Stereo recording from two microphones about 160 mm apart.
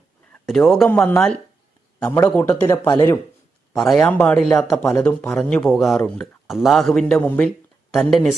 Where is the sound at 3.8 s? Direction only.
5° left (ahead or behind).